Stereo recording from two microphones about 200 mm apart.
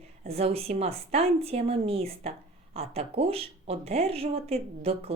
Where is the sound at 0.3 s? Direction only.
30° right (ahead or behind).